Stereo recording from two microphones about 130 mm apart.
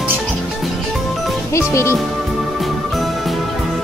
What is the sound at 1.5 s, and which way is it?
Speech, 20° left (ahead or behind).